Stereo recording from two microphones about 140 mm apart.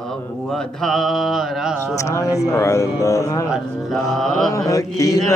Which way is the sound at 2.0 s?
20° left (ahead or behind).